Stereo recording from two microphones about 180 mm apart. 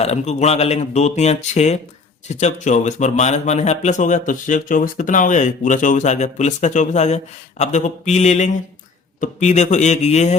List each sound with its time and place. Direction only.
0.0 s speech: 35° left (ahead or behind)